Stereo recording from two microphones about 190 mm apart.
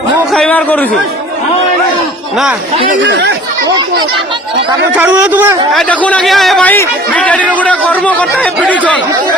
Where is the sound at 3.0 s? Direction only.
65° right (ahead or behind).